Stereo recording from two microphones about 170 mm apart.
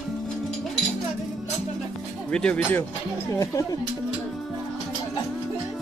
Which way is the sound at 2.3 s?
5° left (ahead or behind).